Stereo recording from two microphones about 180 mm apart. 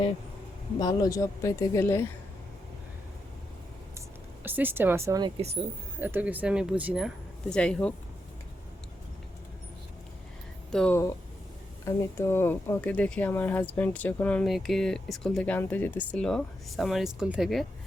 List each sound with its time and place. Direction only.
0.8 s speech: 20° left (ahead or behind)
4.4 s speech: 10° right (ahead or behind)
7.5 s speech: 5° left (ahead or behind)
10.7 s speech: 5° left (ahead or behind)
11.9 s speech: 15° left (ahead or behind); by 17.7 s centre (ahead or behind)